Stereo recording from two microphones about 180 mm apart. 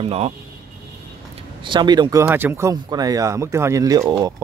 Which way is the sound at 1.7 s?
25° right (ahead or behind).